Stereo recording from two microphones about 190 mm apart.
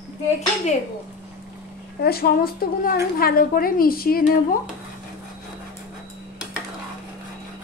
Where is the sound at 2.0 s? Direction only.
55° left (ahead or behind).